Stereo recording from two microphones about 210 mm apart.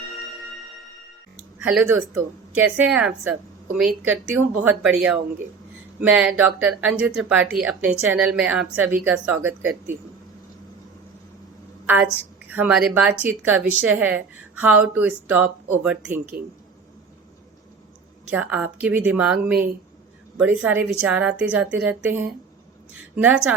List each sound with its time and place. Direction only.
1.6 s a woman's voice: 5° right (ahead or behind)
12.5 s a woman's voice: 5° right (ahead or behind)
18.3 s a woman's voice: 5° right (ahead or behind)